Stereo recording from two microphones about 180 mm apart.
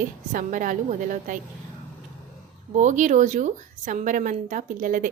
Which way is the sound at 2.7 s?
40° right (ahead or behind).